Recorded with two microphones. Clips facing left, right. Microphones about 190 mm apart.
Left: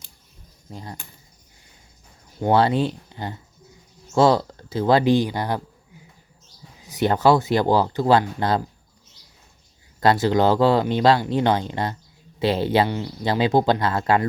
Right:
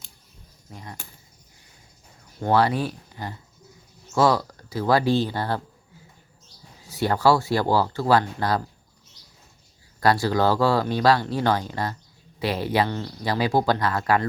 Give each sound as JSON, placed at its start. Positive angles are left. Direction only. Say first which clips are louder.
{"t": 0.7, "sound": "speech", "louder": "left 4 dB", "side_deg": 30}
{"t": 2.4, "sound": "speech", "louder": "left 3 dB", "side_deg": 25}
{"t": 6.8, "sound": "speech", "louder": "left 2 dB", "side_deg": 20}
{"t": 10.0, "sound": "speech", "louder": "left 3 dB", "side_deg": 20}